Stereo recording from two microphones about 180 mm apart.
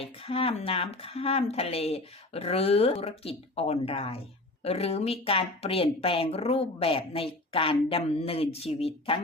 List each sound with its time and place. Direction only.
0.0 s speech: 30° left (ahead or behind)